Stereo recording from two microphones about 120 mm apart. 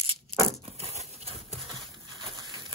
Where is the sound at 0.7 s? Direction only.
55° right (ahead or behind).